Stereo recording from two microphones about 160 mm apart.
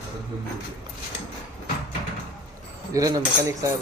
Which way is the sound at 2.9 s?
20° right (ahead or behind).